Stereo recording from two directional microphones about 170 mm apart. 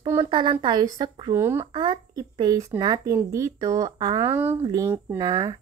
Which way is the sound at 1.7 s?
30° right (ahead or behind).